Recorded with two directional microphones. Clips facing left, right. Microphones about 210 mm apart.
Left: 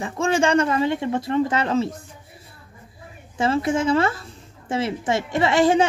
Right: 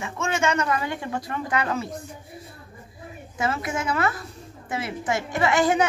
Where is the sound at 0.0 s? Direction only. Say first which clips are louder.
Left 5 dB; 30° left (ahead or behind).